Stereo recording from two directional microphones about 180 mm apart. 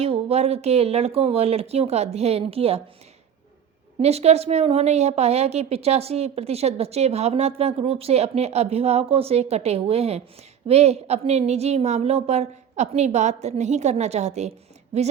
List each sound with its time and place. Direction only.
0.0 s a woman's voice: 35° right (ahead or behind)
4.0 s a woman's voice: 35° right (ahead or behind)